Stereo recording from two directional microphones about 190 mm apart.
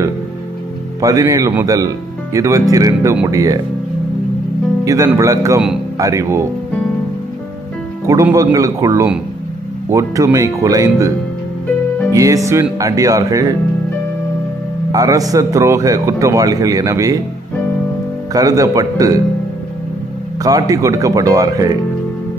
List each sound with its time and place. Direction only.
1.0 s speech: 20° right (ahead or behind)
4.8 s speech: 15° right (ahead or behind)
8.1 s speech: 15° right (ahead or behind)
14.9 s speech: 20° right (ahead or behind)
18.3 s speech: 20° right (ahead or behind)
20.4 s speech: 20° right (ahead or behind)